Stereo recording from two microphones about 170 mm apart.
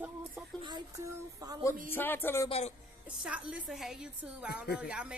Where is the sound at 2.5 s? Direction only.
40° left (ahead or behind).